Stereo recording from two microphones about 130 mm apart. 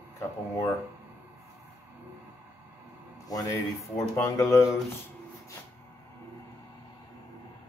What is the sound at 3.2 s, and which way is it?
Speech, 25° left (ahead or behind).